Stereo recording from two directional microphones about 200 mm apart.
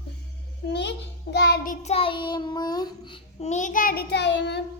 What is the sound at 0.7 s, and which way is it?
Child singing, 60° left (ahead or behind).